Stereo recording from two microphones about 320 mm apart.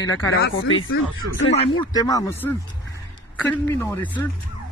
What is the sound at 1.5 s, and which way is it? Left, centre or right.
A man's voice, centre.